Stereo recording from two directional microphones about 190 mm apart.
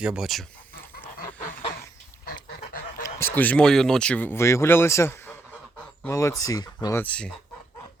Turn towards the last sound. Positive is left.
turn(degrees=5)  # may be behind; listen again after turning